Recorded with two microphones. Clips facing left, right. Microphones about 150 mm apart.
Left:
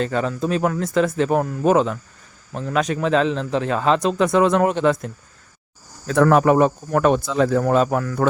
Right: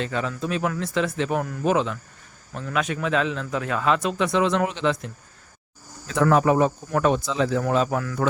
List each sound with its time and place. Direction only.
0.0 s a man's voice: 40° left (ahead or behind)